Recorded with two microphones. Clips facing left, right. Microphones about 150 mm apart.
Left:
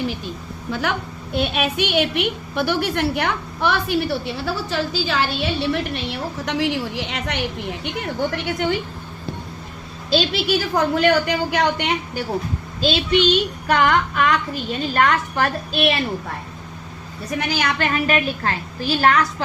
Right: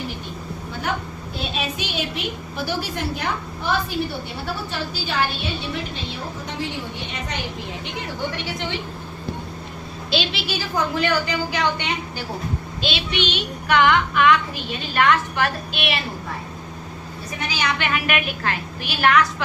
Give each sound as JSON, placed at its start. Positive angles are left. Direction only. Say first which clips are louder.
{"t": 0.7, "sound": "a woman's voice", "louder": "left 4 dB", "side_deg": 85}
{"t": 10.1, "sound": "a woman's voice", "louder": "left 5 dB", "side_deg": 40}
{"t": 10.8, "sound": "a woman's voice", "louder": "left 4 dB", "side_deg": 65}
{"t": 12.8, "sound": "a woman's voice", "louder": "left 8 dB", "side_deg": 40}
{"t": 17.5, "sound": "a woman's voice", "louder": "left 1 dB", "side_deg": 50}